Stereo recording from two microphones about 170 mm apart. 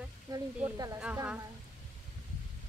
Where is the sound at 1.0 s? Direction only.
5° right (ahead or behind).